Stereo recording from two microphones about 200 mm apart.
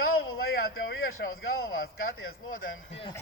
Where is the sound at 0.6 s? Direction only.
50° left (ahead or behind).